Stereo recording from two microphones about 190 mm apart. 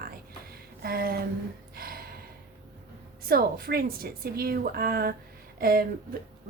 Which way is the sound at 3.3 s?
50° right (ahead or behind).